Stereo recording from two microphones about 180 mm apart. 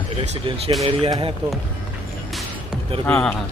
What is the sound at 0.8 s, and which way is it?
Speech, 30° right (ahead or behind).